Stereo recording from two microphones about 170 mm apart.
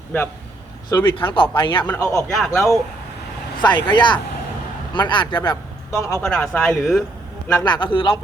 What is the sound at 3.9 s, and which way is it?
A man's voice, 25° left (ahead or behind).